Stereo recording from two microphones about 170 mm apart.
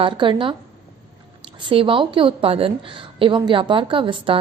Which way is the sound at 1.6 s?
30° right (ahead or behind).